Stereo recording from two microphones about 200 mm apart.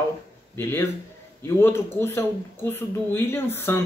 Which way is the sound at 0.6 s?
10° left (ahead or behind).